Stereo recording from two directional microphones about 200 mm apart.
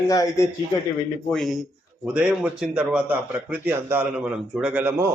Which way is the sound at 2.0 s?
5° right (ahead or behind).